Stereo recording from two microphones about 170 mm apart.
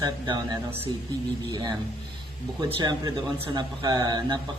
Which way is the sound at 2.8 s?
25° right (ahead or behind).